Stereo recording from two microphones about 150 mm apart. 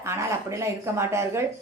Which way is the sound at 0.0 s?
20° right (ahead or behind).